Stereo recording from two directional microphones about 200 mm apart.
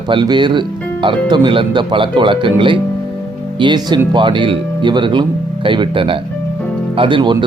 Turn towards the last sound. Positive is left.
turn(degrees=-25)  # may be behind; listen again after turning